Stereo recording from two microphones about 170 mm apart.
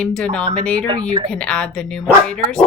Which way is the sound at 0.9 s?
25° right (ahead or behind).